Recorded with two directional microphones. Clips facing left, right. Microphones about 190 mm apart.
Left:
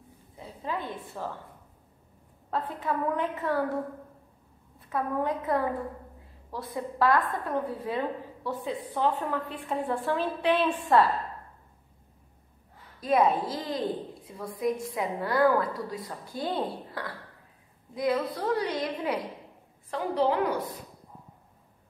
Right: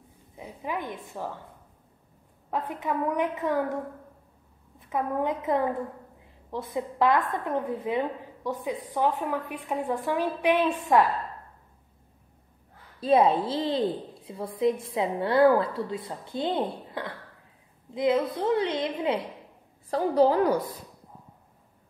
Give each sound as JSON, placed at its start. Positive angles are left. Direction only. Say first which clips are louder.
{"t": 0.4, "sound": "a woman's voice", "louder": "right 1 dB", "side_deg": -15}
{"t": 2.5, "sound": "a woman's voice", "louder": "right 1 dB", "side_deg": -15}
{"t": 4.7, "sound": "a woman's voice", "louder": "right 1 dB", "side_deg": -20}
{"t": 13.0, "sound": "a woman's voice", "louder": "right 3 dB", "side_deg": -30}
{"t": 19.9, "sound": "a woman's voice", "louder": "right 5 dB", "side_deg": -40}